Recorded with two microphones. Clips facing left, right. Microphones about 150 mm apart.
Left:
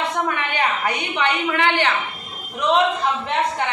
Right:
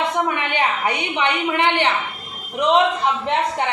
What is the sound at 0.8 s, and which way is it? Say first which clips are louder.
A woman's voice: right 1 dB; 20° right (ahead or behind).